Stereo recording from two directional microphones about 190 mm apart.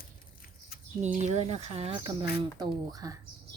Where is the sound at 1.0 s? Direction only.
35° right (ahead or behind).